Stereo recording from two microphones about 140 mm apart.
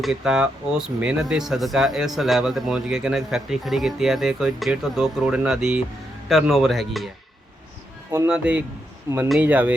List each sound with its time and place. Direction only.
0.0 s speech: 5° right (ahead or behind)
8.3 s speech: 10° right (ahead or behind)
9.0 s speech: 20° right (ahead or behind)
9.3 s speech: 10° right (ahead or behind)